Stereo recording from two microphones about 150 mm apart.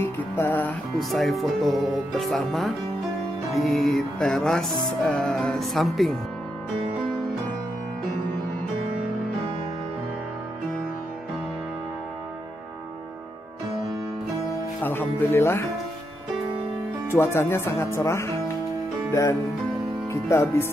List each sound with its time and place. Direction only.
0.0 s music: 15° left (ahead or behind)
0.9 s speech: centre (ahead or behind)
14.8 s speech: 15° left (ahead or behind)
17.1 s speech: 15° left (ahead or behind)
20.1 s speech: 20° left (ahead or behind)